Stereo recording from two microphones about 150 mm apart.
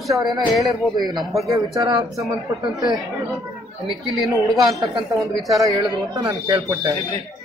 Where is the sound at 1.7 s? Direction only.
20° right (ahead or behind).